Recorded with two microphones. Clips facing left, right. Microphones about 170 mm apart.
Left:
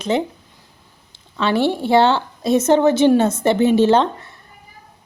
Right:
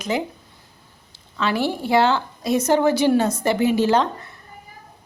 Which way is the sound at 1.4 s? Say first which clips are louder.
Left 4 dB; 25° left (ahead or behind).